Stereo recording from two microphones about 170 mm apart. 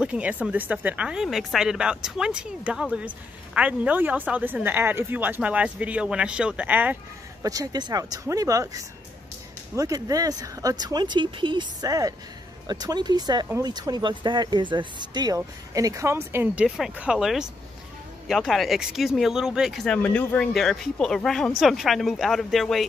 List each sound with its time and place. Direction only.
0.0 s speech: 5° right (ahead or behind)
7.4 s speech: 20° right (ahead or behind); by 22.8 s centre (ahead or behind)